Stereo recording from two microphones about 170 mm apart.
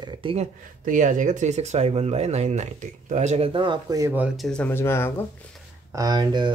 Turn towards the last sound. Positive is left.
turn(degrees=-25)  # may be behind; listen again after turning